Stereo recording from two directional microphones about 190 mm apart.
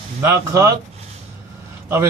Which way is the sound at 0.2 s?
15° right (ahead or behind).